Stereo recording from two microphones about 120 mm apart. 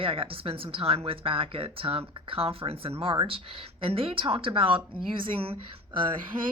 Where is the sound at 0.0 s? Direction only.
50° right (ahead or behind).